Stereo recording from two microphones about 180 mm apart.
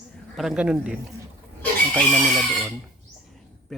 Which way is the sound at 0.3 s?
5° right (ahead or behind).